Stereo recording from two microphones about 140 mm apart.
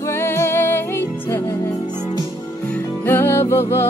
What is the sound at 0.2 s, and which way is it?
Music, 15° left (ahead or behind).